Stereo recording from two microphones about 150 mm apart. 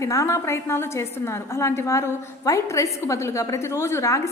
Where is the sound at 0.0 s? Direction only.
20° left (ahead or behind).